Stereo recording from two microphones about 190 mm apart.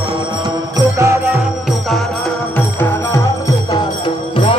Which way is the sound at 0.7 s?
15° right (ahead or behind).